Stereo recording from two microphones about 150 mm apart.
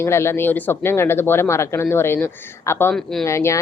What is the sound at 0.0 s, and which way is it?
A woman's voice, 15° left (ahead or behind).